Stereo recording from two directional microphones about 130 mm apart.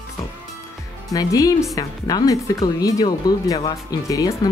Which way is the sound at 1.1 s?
25° left (ahead or behind).